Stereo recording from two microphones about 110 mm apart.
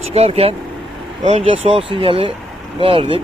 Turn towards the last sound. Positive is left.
turn(degrees=-55)  # may be behind; listen again after turning